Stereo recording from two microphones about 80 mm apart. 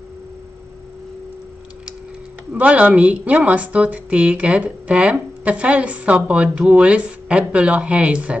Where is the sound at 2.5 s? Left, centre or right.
Centre.